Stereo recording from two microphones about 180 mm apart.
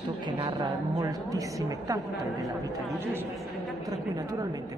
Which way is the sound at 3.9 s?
20° right (ahead or behind).